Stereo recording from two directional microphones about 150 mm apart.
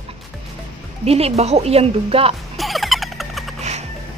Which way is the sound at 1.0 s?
45° right (ahead or behind).